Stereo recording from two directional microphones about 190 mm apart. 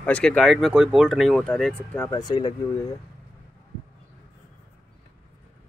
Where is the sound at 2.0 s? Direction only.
20° left (ahead or behind).